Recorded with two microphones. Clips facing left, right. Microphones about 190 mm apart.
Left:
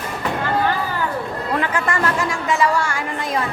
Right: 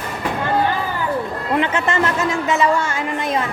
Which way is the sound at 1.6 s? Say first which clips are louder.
Right 3 dB; 20° right (ahead or behind).